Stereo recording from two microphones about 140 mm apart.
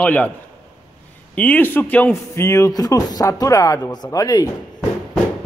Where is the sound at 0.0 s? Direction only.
10° left (ahead or behind).